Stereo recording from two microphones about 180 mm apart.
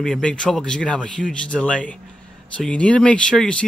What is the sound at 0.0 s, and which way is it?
Speech, 5° left (ahead or behind).